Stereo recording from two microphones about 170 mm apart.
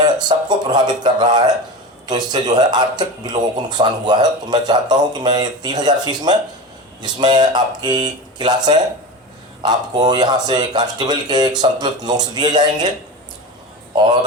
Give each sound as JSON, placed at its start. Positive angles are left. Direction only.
{"t": 0.0, "sound": "a man's voice", "side_deg": -25}
{"t": 13.9, "sound": "a man's voice", "side_deg": -25}